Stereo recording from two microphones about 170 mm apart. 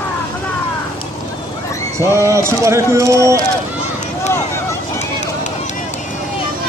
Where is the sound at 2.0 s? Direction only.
15° right (ahead or behind).